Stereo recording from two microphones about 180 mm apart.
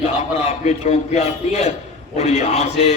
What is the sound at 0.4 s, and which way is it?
Speech, 35° left (ahead or behind).